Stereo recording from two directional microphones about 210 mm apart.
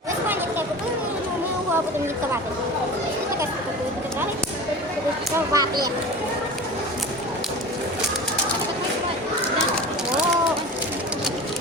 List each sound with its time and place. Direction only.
5.5 s speech: 15° right (ahead or behind)